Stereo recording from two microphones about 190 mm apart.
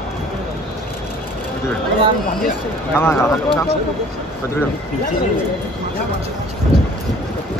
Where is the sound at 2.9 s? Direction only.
10° left (ahead or behind).